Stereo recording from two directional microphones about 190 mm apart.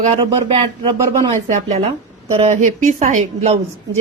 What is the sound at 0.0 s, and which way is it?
A woman's voice, 30° right (ahead or behind).